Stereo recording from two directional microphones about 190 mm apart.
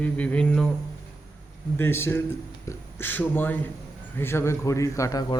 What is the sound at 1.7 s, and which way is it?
A man's voice, 10° left (ahead or behind).